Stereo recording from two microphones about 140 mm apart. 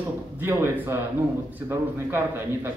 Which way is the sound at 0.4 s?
15° right (ahead or behind).